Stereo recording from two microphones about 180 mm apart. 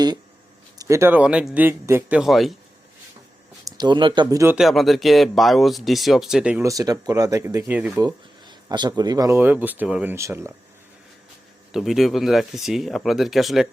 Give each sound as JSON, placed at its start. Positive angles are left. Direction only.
{"t": 0.8, "sound": "speech", "side_deg": -15}
{"t": 3.7, "sound": "speech", "side_deg": -25}
{"t": 4.5, "sound": "speech", "side_deg": 0}
{"t": 6.6, "sound": "speech", "side_deg": -20}
{"t": 8.0, "sound": "speech", "side_deg": -25}
{"t": 11.7, "sound": "speech", "side_deg": 0}